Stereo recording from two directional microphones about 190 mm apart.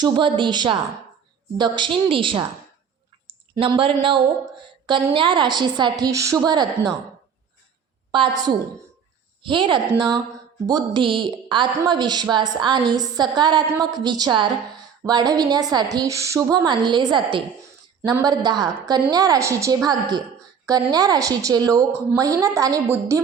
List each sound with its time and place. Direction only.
0.0 s a woman's voice: 25° right (ahead or behind)
3.5 s a woman's voice: 25° right (ahead or behind)
9.4 s a woman's voice: 25° right (ahead or behind)